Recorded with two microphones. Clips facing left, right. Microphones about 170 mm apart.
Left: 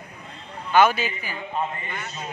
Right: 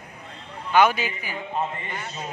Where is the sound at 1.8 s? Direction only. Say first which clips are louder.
Even; 35° right (ahead or behind).